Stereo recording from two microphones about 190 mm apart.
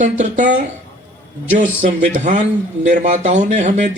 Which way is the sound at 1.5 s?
40° right (ahead or behind).